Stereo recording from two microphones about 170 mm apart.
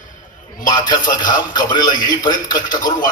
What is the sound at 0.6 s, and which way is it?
A man's voice, 25° left (ahead or behind).